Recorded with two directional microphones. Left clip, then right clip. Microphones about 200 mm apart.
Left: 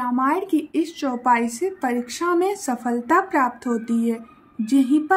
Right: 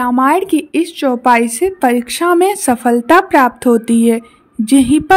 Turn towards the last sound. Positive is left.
turn(degrees=-45)  # may be behind; listen again after turning